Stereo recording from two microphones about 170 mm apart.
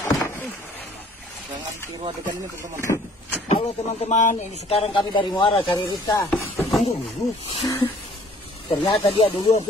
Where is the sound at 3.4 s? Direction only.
40° left (ahead or behind).